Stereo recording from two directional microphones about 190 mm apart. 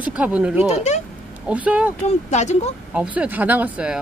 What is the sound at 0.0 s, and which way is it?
Speech, 5° right (ahead or behind).